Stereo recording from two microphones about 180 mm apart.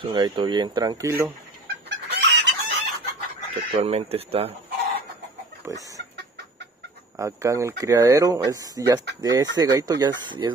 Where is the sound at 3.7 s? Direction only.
35° right (ahead or behind).